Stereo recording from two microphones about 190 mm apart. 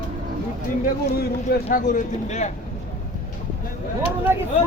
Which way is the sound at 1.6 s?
40° left (ahead or behind).